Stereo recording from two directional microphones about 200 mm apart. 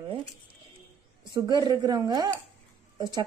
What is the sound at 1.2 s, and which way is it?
Speech, 20° right (ahead or behind).